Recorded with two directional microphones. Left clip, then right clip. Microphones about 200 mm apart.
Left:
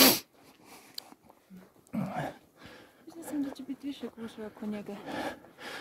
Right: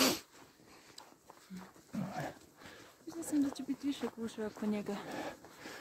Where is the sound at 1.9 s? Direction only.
65° left (ahead or behind).